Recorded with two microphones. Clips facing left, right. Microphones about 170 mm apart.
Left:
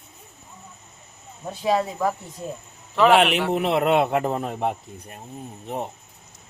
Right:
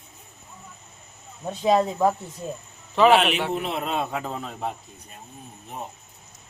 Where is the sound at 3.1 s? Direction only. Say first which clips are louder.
Left 2 dB; 65° left (ahead or behind).